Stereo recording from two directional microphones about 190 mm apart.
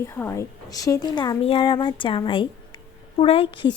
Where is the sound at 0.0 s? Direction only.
15° left (ahead or behind).